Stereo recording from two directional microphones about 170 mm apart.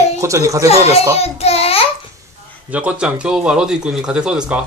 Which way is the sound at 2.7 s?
10° right (ahead or behind).